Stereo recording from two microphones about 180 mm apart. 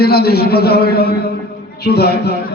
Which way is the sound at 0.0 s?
60° left (ahead or behind).